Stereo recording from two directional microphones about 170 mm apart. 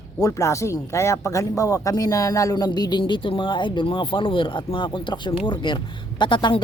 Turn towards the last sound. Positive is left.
turn(degrees=30)  # may be behind; listen again after turning